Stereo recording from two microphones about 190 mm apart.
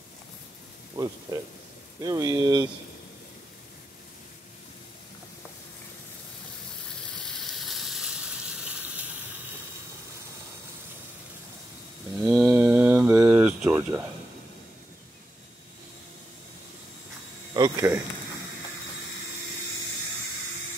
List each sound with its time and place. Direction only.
0.9 s speech: 20° right (ahead or behind)
12.2 s mantra: 15° right (ahead or behind)
13.5 s a sound: 10° right (ahead or behind)
17.6 s speech: 15° right (ahead or behind)